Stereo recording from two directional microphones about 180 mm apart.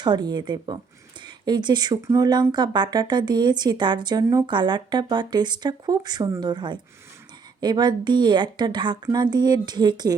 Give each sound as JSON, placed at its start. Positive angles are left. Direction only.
{"t": 0.0, "sound": "speech", "side_deg": -25}